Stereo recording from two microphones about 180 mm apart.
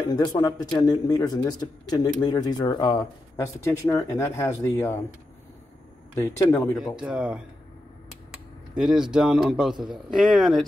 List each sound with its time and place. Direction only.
0.1 s speech: 25° left (ahead or behind)
6.1 s speech: 15° left (ahead or behind)
7.0 s speech: 5° right (ahead or behind)
8.7 s speech: centre (ahead or behind)